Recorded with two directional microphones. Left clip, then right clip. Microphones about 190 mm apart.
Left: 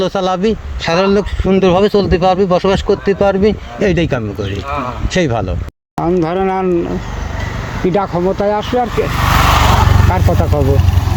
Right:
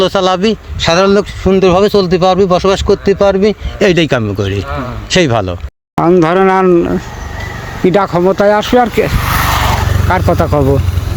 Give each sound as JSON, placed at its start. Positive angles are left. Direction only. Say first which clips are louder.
{"t": 0.0, "sound": "speech", "louder": "right 4 dB", "side_deg": -50}
{"t": 9.2, "sound": "a sound", "louder": "left 1 dB", "side_deg": 10}
{"t": 10.1, "sound": "speech", "louder": "right 5 dB", "side_deg": -50}